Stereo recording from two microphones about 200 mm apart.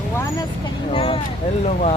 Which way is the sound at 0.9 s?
25° left (ahead or behind).